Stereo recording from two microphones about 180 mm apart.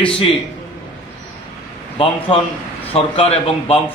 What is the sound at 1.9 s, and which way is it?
A man's voice, 30° left (ahead or behind).